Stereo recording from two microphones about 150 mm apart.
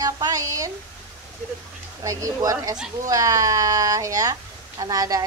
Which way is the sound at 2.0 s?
20° right (ahead or behind).